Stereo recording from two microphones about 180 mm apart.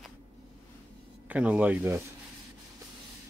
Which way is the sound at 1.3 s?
10° right (ahead or behind).